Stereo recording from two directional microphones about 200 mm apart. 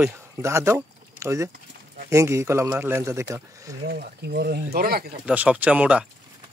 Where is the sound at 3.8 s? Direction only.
55° right (ahead or behind).